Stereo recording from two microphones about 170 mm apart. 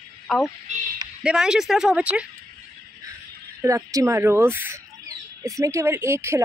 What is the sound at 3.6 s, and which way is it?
Speech, 20° right (ahead or behind).